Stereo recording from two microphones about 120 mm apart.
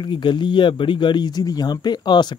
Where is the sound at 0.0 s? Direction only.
40° left (ahead or behind).